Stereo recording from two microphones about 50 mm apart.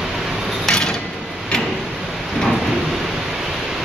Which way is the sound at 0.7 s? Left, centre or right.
Centre.